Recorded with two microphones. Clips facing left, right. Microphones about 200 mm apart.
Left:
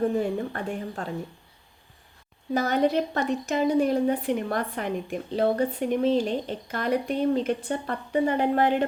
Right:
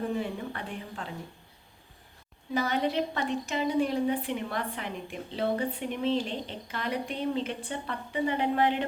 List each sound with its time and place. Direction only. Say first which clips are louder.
0.2 s a woman's voice: left 6 dB; 45° left (ahead or behind)
2.5 s a woman's voice: left 5 dB; 45° left (ahead or behind)